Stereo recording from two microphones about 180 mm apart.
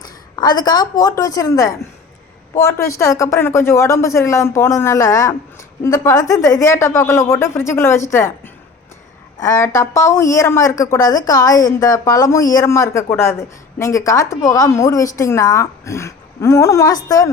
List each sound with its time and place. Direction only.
0.3 s a woman's voice: 25° left (ahead or behind)
9.4 s a woman's voice: 15° left (ahead or behind)